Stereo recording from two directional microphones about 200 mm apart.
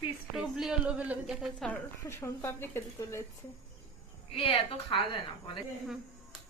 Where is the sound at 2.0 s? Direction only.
15° left (ahead or behind).